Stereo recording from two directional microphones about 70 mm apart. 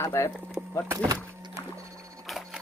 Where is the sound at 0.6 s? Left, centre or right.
Centre.